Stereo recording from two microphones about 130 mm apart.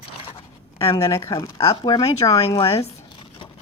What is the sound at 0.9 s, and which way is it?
Speech, 25° left (ahead or behind).